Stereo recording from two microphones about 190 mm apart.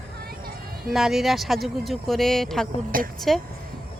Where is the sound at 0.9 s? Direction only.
Centre (ahead or behind).